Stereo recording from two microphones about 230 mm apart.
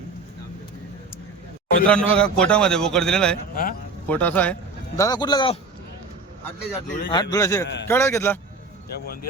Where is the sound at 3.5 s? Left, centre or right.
Left.